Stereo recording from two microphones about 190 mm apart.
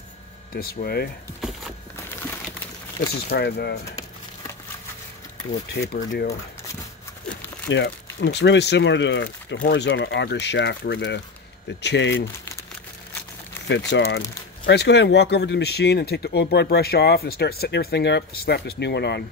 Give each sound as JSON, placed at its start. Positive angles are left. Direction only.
{"t": 0.6, "sound": "speech", "side_deg": 55}
{"t": 3.3, "sound": "speech", "side_deg": 60}
{"t": 5.7, "sound": "speech", "side_deg": 60}
{"t": 7.7, "sound": "speech", "side_deg": 70}
{"t": 13.7, "sound": "speech", "side_deg": 70}